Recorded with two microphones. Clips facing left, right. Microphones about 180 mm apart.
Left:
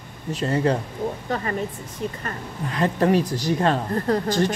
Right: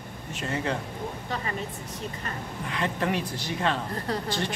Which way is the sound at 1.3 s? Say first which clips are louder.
Left 6 dB; 45° left (ahead or behind).